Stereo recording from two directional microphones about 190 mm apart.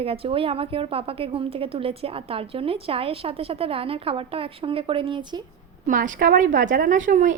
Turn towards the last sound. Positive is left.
turn(degrees=-40)  # may be behind; listen again after turning